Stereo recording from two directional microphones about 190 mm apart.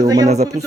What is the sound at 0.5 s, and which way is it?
Speech, 35° right (ahead or behind).